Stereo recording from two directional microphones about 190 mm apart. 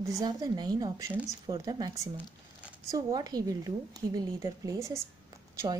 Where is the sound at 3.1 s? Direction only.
20° right (ahead or behind).